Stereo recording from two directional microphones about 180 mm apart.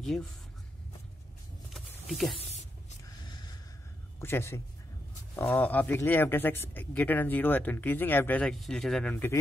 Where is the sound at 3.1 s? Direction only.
25° left (ahead or behind).